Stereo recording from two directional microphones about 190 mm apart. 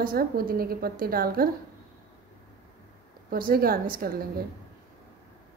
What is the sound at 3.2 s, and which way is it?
A woman's voice, 50° right (ahead or behind).